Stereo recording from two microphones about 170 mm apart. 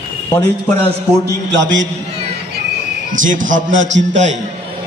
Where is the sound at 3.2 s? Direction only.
50° right (ahead or behind).